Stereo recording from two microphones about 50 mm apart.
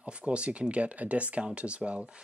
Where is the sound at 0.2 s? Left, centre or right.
Right.